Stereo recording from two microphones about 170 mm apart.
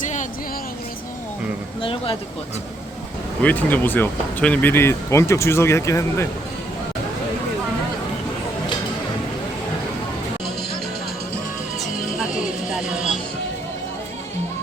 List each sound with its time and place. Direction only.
0.0 s vehicle: 45° left (ahead or behind)
1.8 s speech: 30° left (ahead or behind)
3.4 s speech: 10° left (ahead or behind)